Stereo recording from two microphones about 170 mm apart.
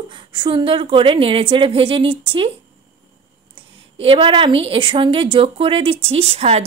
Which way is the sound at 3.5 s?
30° right (ahead or behind).